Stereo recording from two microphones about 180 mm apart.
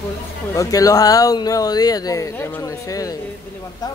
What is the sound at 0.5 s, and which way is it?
Speech, 20° left (ahead or behind).